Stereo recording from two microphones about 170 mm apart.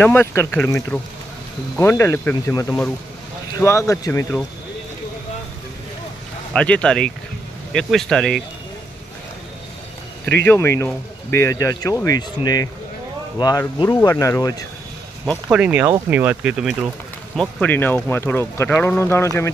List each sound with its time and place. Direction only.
0.0 s speech: 15° left (ahead or behind)
6.5 s speech: 5° left (ahead or behind)
10.4 s speech: 15° left (ahead or behind)
15.5 s speech: 10° right (ahead or behind)
17.4 s speech: 10° left (ahead or behind)